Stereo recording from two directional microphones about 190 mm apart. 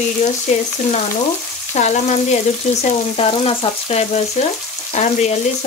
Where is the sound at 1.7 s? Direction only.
35° left (ahead or behind).